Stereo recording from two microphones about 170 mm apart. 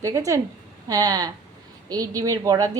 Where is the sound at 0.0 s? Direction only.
20° right (ahead or behind).